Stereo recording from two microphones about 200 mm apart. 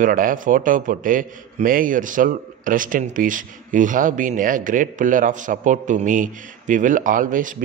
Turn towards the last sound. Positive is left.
turn(degrees=-40)  # may be behind; listen again after turning